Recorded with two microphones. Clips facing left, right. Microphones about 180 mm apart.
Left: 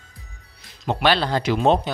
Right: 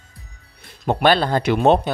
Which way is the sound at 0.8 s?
55° right (ahead or behind).